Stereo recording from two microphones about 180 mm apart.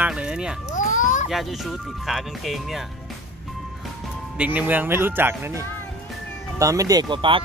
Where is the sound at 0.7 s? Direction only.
45° left (ahead or behind).